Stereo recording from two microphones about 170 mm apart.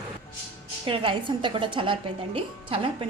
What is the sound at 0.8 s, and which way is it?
A woman's voice, 30° right (ahead or behind).